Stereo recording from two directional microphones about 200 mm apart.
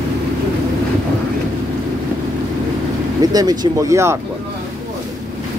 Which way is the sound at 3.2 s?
20° right (ahead or behind).